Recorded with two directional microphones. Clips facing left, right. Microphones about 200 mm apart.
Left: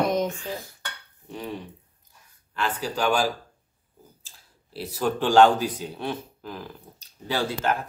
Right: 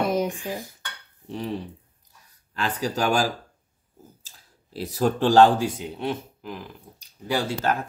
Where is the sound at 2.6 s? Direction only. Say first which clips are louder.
Right 1 dB; 40° right (ahead or behind).